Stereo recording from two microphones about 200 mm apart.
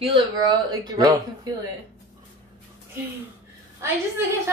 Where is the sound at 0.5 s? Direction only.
20° right (ahead or behind).